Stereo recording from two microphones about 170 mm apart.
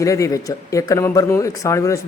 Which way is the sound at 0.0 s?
20° left (ahead or behind).